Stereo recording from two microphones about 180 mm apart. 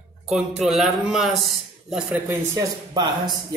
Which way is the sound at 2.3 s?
20° right (ahead or behind).